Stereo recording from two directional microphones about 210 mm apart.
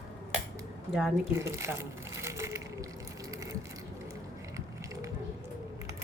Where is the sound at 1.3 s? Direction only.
15° right (ahead or behind).